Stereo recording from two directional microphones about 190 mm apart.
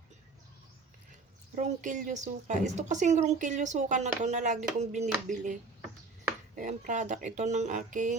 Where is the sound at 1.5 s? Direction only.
40° right (ahead or behind).